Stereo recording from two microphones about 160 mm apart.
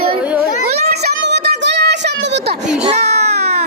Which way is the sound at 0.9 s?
90° right.